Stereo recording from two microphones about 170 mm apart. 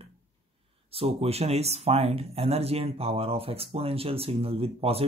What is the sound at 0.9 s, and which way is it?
Speech, 35° right (ahead or behind).